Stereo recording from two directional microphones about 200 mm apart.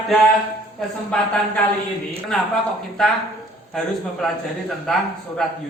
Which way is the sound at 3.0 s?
Centre (ahead or behind).